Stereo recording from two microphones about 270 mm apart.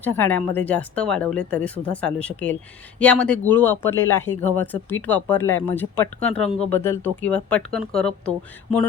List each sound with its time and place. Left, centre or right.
0.0 s speech: centre